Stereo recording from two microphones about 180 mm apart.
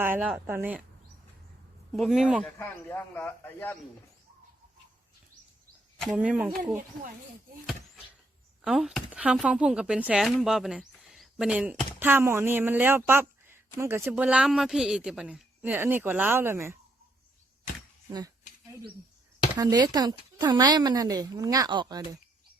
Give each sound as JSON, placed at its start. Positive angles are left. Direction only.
{"t": 0.0, "sound": "speech", "side_deg": -10}
{"t": 1.9, "sound": "speech", "side_deg": 0}
{"t": 2.4, "sound": "a man's voice", "side_deg": 10}
{"t": 6.0, "sound": "speech", "side_deg": -5}
{"t": 8.6, "sound": "speech", "side_deg": 0}
{"t": 19.5, "sound": "a woman's voice", "side_deg": -20}